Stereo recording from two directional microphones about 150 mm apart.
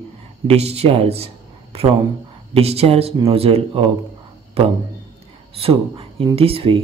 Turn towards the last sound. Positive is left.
turn(degrees=-40)  # may be behind; listen again after turning